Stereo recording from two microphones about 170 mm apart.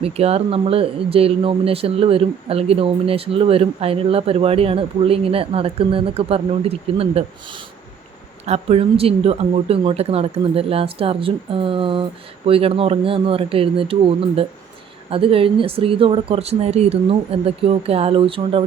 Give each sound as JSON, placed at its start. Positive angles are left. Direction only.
{"t": 0.0, "sound": "speech", "side_deg": -35}
{"t": 8.4, "sound": "speech", "side_deg": -40}
{"t": 15.1, "sound": "speech", "side_deg": -35}